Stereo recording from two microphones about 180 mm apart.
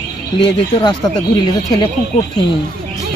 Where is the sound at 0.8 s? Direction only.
25° left (ahead or behind).